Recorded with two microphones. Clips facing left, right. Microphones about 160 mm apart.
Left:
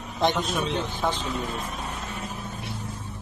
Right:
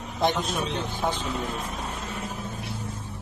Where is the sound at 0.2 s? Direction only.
10° right (ahead or behind).